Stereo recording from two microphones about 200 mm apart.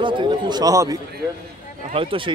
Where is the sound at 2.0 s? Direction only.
25° right (ahead or behind).